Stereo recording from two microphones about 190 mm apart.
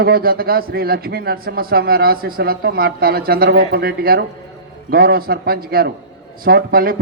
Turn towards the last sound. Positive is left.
turn(degrees=-50)  # may be behind; listen again after turning